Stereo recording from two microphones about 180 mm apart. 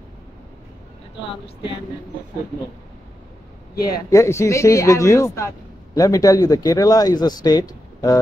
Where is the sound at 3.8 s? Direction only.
20° left (ahead or behind).